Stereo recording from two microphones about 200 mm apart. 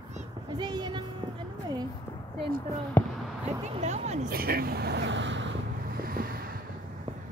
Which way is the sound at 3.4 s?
35° right (ahead or behind).